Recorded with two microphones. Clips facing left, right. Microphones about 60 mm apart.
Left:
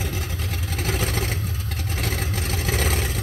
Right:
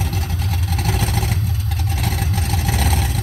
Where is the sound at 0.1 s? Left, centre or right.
Centre.